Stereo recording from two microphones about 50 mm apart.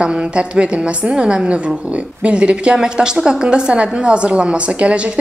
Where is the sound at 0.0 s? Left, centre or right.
Right.